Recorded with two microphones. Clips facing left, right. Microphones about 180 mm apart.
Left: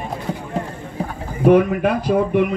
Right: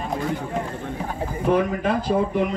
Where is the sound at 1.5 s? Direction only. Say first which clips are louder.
Left 6 dB; 65° left (ahead or behind).